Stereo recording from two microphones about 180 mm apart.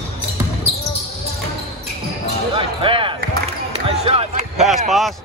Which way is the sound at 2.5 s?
30° right (ahead or behind).